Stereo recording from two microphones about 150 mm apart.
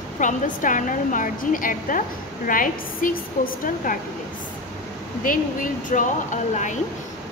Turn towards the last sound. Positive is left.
turn(degrees=55)  # may be behind; listen again after turning